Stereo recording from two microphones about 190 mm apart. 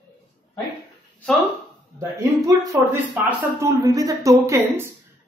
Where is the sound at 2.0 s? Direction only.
15° right (ahead or behind).